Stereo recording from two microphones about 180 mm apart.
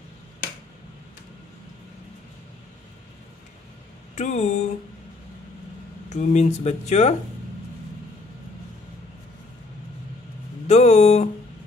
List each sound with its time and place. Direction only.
4.1 s speech: 40° left (ahead or behind)
6.0 s speech: 40° left (ahead or behind)
10.7 s speech: 35° left (ahead or behind)